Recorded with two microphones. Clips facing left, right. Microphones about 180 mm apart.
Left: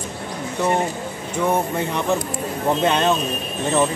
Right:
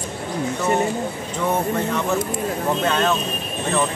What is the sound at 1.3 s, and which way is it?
Speech, 10° left (ahead or behind).